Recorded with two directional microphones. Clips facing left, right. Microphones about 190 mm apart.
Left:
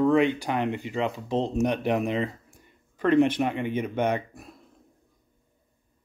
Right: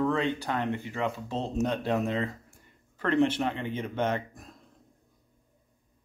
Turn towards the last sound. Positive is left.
turn(degrees=15)  # may be behind; listen again after turning